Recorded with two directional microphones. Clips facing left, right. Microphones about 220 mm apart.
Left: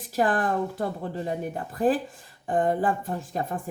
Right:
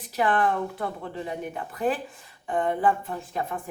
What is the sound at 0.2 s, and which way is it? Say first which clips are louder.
Speech: even; 40° left (ahead or behind).